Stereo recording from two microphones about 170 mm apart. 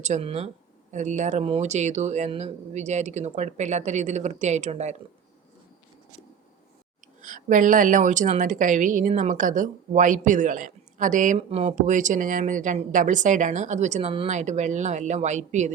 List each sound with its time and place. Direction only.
0.0 s a woman's voice: 40° right (ahead or behind)
7.2 s a woman's voice: 50° right (ahead or behind)